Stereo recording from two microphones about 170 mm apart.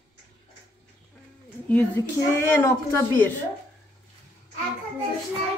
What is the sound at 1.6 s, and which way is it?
Speech, 10° left (ahead or behind).